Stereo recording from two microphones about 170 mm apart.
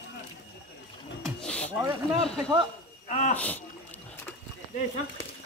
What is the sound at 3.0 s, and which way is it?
Speech, 45° left (ahead or behind).